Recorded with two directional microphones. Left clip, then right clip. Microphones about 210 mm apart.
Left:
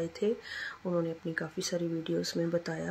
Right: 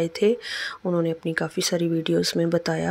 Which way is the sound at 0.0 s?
40° right (ahead or behind).